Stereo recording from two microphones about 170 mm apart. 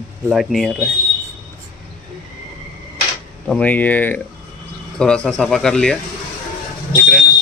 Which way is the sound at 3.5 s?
10° left (ahead or behind).